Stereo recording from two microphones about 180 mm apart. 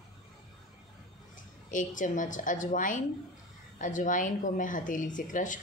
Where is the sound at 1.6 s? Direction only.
45° left (ahead or behind).